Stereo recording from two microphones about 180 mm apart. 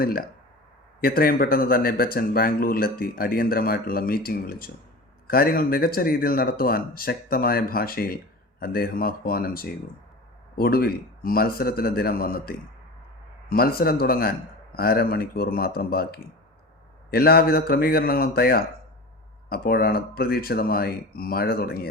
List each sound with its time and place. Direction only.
0.0 s speech: 55° left (ahead or behind)